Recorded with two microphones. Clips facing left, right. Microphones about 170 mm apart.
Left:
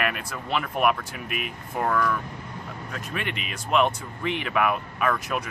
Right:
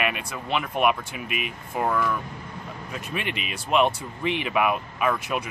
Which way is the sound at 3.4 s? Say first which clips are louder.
Right 1 dB; 5° right (ahead or behind).